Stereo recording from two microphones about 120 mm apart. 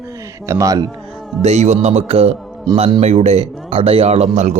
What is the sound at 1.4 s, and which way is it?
A man's voice, 70° right (ahead or behind).